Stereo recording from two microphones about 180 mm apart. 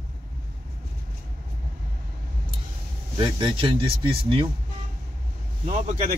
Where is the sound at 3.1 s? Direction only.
25° right (ahead or behind).